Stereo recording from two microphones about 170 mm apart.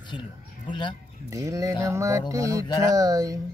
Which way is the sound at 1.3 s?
20° right (ahead or behind).